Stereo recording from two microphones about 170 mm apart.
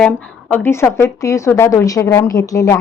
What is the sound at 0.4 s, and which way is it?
A woman's voice, 10° left (ahead or behind).